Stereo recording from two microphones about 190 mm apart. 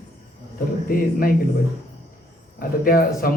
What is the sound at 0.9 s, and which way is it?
Speech, 50° left (ahead or behind).